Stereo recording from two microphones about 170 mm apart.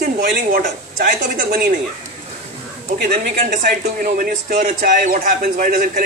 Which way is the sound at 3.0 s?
50° right (ahead or behind).